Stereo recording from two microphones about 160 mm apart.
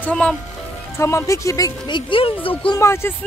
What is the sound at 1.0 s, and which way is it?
Speech, 20° left (ahead or behind).